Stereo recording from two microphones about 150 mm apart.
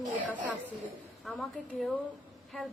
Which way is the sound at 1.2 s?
Centre (ahead or behind).